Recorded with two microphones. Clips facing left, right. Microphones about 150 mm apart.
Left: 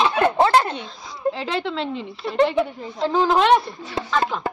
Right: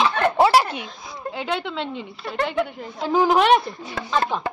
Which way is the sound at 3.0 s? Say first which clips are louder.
Even; 10° right (ahead or behind).